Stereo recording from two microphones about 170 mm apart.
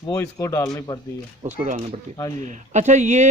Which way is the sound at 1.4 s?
45° right (ahead or behind).